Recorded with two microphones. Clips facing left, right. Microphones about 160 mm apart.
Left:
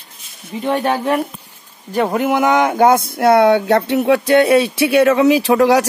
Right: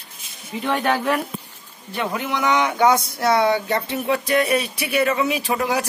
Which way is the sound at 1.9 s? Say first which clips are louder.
Left 9 dB; 45° left (ahead or behind).